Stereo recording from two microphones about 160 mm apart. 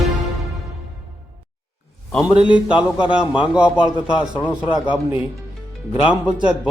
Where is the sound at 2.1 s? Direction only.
5° right (ahead or behind).